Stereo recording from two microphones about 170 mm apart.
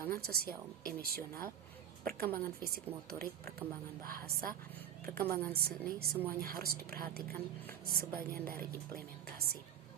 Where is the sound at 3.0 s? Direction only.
65° right (ahead or behind).